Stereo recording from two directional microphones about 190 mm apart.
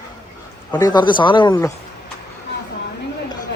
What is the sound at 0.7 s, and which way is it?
Speech, 20° left (ahead or behind).